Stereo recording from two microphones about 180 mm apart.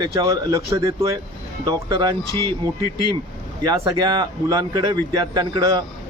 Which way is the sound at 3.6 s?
20° right (ahead or behind).